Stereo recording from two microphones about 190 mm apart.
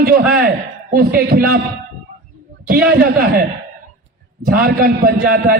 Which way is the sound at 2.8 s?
50° right (ahead or behind).